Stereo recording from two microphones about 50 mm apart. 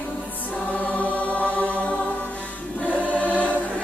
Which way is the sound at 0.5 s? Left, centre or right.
Left.